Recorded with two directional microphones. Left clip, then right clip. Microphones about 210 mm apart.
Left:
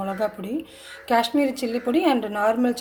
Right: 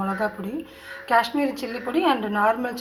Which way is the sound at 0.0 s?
45° left (ahead or behind).